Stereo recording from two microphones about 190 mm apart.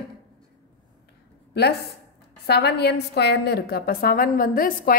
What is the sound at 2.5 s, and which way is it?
A woman's voice, 60° left (ahead or behind).